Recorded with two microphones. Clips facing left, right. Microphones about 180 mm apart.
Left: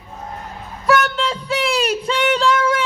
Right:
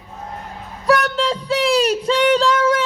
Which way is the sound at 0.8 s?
35° right (ahead or behind).